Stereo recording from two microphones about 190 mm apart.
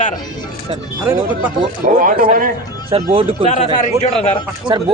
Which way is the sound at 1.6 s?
45° right (ahead or behind).